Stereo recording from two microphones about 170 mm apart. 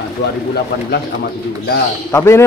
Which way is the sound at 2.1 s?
15° left (ahead or behind).